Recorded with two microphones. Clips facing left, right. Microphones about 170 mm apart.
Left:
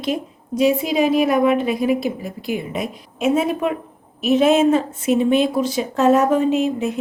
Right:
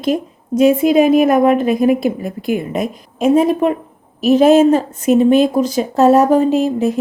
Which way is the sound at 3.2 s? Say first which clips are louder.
Right 6 dB; 35° right (ahead or behind).